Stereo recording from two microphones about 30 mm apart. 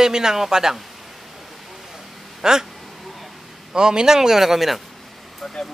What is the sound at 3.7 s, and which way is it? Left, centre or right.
A man's voice, right.